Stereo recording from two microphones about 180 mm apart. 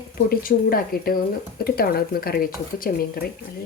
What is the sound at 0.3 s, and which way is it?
Speech, 55° left (ahead or behind).